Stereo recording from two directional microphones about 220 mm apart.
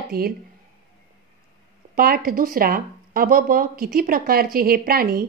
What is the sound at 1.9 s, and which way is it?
A woman's voice, 40° right (ahead or behind).